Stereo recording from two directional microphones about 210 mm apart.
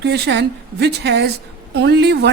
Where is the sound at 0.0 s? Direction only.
55° right (ahead or behind).